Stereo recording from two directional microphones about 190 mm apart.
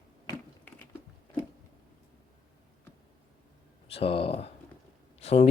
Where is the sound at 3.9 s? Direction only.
30° left (ahead or behind).